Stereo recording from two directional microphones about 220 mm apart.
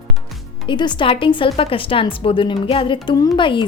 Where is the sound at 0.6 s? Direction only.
20° left (ahead or behind).